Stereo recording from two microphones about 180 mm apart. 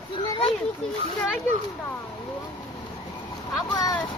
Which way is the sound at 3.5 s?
20° left (ahead or behind).